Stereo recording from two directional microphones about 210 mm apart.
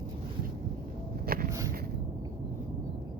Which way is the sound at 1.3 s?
45° right (ahead or behind).